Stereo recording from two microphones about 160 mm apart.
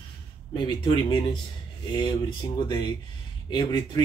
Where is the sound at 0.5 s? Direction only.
30° left (ahead or behind).